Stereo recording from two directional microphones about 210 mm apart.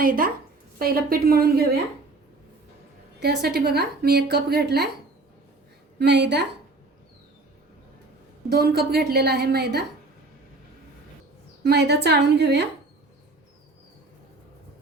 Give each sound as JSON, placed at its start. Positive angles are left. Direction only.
{"t": 0.0, "sound": "a woman's voice", "side_deg": -40}
{"t": 3.2, "sound": "a woman's voice", "side_deg": -50}
{"t": 6.0, "sound": "a woman's voice", "side_deg": -55}
{"t": 8.4, "sound": "a woman's voice", "side_deg": -50}
{"t": 11.6, "sound": "a woman's voice", "side_deg": -50}